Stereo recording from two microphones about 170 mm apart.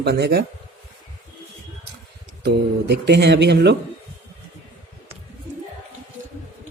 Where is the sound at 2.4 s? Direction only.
75° right (ahead or behind).